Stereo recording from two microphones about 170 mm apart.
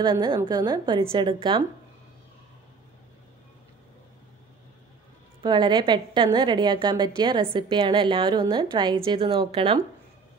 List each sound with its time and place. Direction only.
0.0 s a woman's voice: 25° right (ahead or behind)
5.4 s a woman's voice: 25° right (ahead or behind)